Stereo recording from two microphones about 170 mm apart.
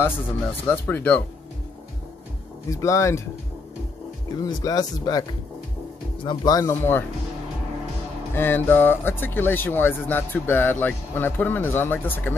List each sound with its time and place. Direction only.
0.0 s speech: 10° left (ahead or behind)
2.7 s speech: 20° left (ahead or behind)
4.3 s speech: 25° left (ahead or behind)
6.2 s speech: 20° left (ahead or behind)
8.4 s speech: 10° left (ahead or behind)